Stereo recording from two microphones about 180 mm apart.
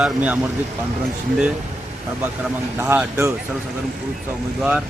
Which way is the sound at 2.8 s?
15° right (ahead or behind).